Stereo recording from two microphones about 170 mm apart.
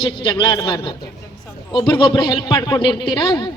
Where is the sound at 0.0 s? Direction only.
30° left (ahead or behind).